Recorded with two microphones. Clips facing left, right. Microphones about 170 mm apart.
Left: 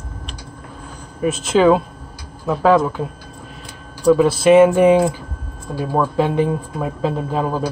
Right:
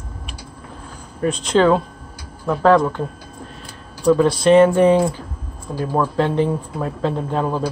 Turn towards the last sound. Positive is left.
turn(degrees=5)  # may be behind; listen again after turning